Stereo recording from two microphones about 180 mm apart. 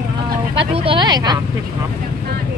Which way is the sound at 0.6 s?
30° right (ahead or behind).